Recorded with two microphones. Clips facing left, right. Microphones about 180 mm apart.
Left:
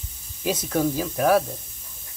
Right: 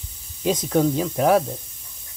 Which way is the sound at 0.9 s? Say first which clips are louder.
Right 2 dB; 20° right (ahead or behind).